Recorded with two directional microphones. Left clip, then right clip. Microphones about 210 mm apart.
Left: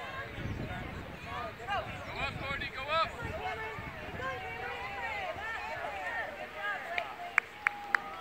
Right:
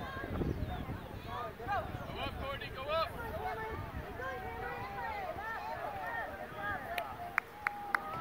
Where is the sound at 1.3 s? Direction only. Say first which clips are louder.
Left 1 dB; 20° left (ahead or behind).